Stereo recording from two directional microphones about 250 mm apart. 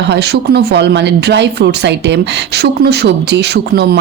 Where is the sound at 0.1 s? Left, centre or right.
Right.